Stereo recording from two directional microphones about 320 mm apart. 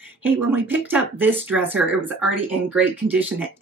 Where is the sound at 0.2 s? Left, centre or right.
Centre.